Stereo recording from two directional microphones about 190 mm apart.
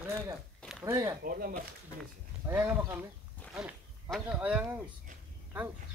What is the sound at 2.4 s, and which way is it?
Speech, 15° right (ahead or behind).